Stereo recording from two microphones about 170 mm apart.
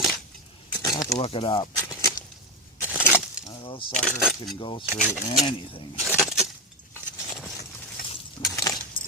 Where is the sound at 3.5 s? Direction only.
30° left (ahead or behind).